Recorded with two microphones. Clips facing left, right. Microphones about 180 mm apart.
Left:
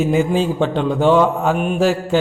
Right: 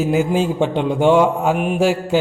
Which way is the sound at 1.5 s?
80° right.